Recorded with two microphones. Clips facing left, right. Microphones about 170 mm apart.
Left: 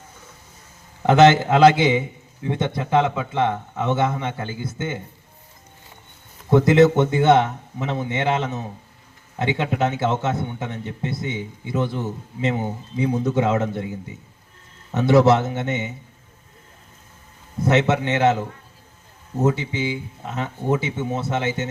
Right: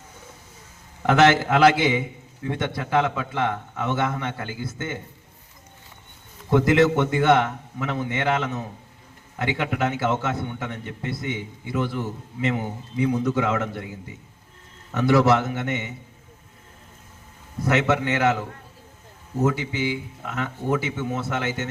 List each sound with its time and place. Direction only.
1.0 s a man's voice: 20° left (ahead or behind)
6.5 s a man's voice: 20° left (ahead or behind)
14.9 s a man's voice: 25° left (ahead or behind)
17.6 s a man's voice: 25° left (ahead or behind)
19.5 s a man's voice: 25° left (ahead or behind)